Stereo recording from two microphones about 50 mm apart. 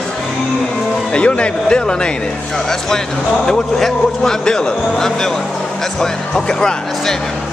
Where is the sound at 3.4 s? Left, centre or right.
Centre.